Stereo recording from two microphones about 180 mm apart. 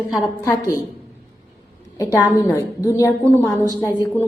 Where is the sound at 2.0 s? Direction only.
15° left (ahead or behind).